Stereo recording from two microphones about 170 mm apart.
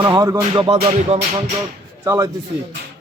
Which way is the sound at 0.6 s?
40° right (ahead or behind).